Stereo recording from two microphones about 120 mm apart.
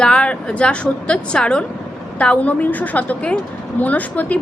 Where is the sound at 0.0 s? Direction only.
10° left (ahead or behind).